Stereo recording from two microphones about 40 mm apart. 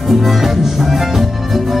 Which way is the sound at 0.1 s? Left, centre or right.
Centre.